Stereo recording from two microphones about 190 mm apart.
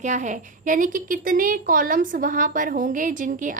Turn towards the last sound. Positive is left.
turn(degrees=-40)  # may be behind; listen again after turning